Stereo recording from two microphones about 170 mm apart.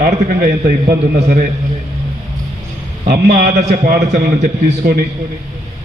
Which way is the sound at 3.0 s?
50° right (ahead or behind).